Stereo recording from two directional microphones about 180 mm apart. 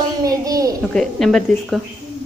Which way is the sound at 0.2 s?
20° right (ahead or behind).